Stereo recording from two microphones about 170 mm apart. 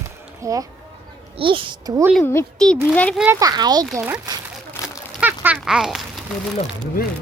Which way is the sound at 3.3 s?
20° right (ahead or behind).